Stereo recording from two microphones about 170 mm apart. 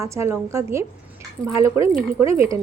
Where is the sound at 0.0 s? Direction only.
15° right (ahead or behind).